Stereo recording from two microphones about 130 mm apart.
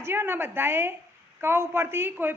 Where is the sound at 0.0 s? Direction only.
20° right (ahead or behind).